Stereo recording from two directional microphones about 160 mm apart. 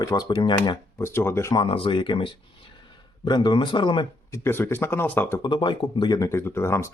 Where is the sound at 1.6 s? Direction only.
35° left (ahead or behind).